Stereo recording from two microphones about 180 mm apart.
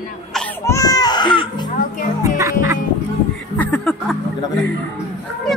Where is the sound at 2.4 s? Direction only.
15° right (ahead or behind).